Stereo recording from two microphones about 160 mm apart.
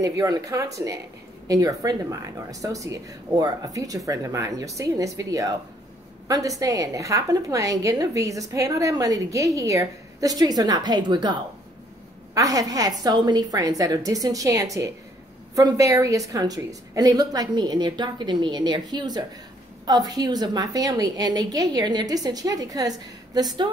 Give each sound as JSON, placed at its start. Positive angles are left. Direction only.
{"t": 0.0, "sound": "a woman's voice", "side_deg": -20}
{"t": 12.4, "sound": "a woman's voice", "side_deg": -20}